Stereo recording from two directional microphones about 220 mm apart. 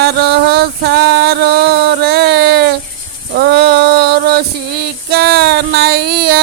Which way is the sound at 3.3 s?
45° right (ahead or behind).